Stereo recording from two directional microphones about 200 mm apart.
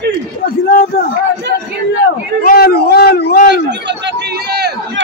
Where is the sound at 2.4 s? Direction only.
50° left (ahead or behind).